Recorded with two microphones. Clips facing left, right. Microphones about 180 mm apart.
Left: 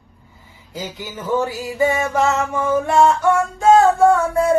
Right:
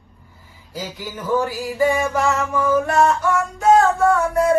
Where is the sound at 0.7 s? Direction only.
20° left (ahead or behind).